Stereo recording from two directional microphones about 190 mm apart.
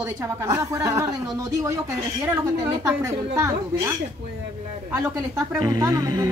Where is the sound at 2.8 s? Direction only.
15° right (ahead or behind).